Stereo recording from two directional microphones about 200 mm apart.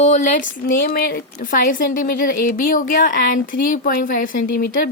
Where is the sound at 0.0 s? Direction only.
35° left (ahead or behind).